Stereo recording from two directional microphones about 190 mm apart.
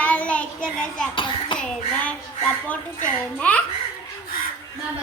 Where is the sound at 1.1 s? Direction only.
25° left (ahead or behind).